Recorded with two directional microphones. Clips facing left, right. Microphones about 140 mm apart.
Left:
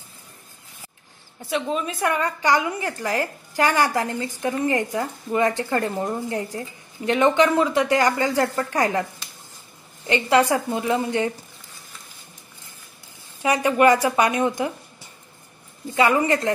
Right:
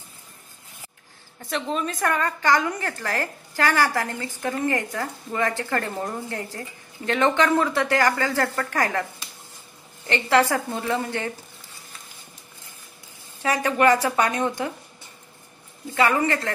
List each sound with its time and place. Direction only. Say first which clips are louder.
1.4 s a woman's voice: left 2 dB; 10° left (ahead or behind)
10.0 s a woman's voice: left 2 dB; 15° left (ahead or behind)
13.4 s a woman's voice: left 3 dB; 10° left (ahead or behind)